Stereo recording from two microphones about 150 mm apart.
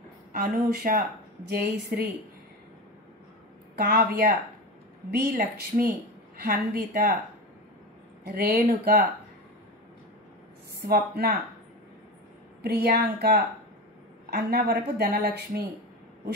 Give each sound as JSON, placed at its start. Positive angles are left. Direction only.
{"t": 0.3, "sound": "speech", "side_deg": -65}
{"t": 1.5, "sound": "speech", "side_deg": -80}
{"t": 3.8, "sound": "speech", "side_deg": -80}
{"t": 8.3, "sound": "speech", "side_deg": -90}
{"t": 10.8, "sound": "a woman's voice", "side_deg": -90}
{"t": 12.6, "sound": "a woman's voice", "side_deg": -90}